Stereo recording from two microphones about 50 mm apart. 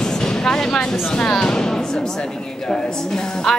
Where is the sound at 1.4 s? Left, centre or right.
Centre.